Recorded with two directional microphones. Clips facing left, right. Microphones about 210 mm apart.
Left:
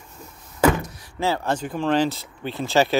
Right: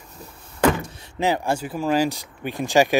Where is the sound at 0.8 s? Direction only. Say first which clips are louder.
Right 2 dB; 25° right (ahead or behind).